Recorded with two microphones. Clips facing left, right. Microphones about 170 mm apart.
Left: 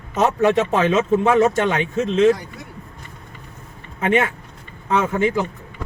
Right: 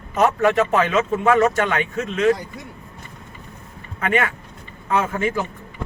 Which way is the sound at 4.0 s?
25° left (ahead or behind).